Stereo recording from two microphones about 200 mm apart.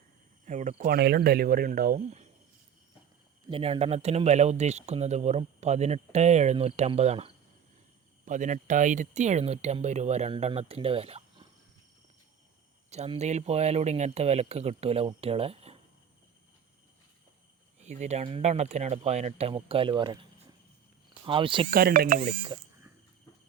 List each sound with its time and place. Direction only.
0.4 s speech: 35° right (ahead or behind)
3.5 s speech: 30° right (ahead or behind)
12.9 s speech: 35° right (ahead or behind)
17.7 s speech: 35° right (ahead or behind)
21.7 s speech: 45° right (ahead or behind)